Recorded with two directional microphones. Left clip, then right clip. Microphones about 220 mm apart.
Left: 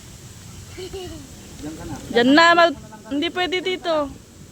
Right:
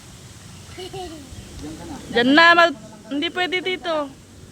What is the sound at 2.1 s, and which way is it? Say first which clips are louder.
Speech: even; 10° left (ahead or behind).